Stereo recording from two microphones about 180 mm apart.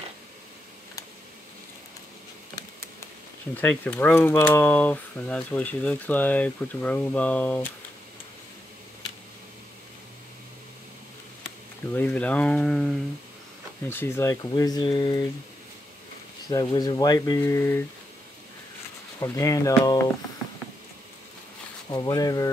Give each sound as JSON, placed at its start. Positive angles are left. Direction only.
{"t": 3.5, "sound": "speech", "side_deg": 10}
{"t": 11.4, "sound": "speech", "side_deg": 10}
{"t": 13.8, "sound": "speech", "side_deg": 15}
{"t": 16.4, "sound": "speech", "side_deg": 20}
{"t": 19.1, "sound": "speech", "side_deg": 15}
{"t": 21.8, "sound": "speech", "side_deg": 20}